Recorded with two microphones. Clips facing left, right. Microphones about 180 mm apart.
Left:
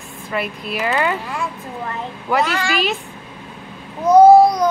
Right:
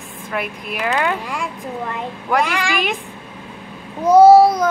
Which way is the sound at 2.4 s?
15° right (ahead or behind).